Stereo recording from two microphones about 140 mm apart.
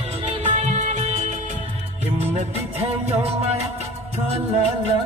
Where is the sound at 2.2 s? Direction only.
45° right (ahead or behind).